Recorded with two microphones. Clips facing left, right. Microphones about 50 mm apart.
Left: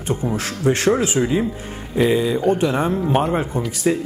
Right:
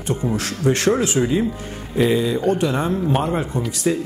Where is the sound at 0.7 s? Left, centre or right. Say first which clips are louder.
Left 1 dB; centre.